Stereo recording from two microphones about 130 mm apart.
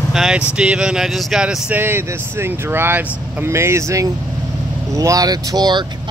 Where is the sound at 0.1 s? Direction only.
5° right (ahead or behind).